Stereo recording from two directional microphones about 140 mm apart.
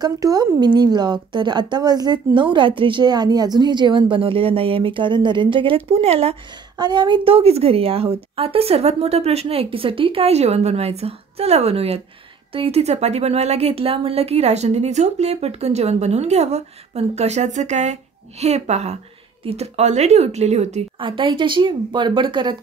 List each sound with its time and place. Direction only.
0.0 s a woman's voice: 25° right (ahead or behind); by 6.3 s 45° right (ahead or behind)
6.8 s speech: 30° right (ahead or behind); by 20.8 s 50° right (ahead or behind)
21.0 s a woman's voice: 35° right (ahead or behind)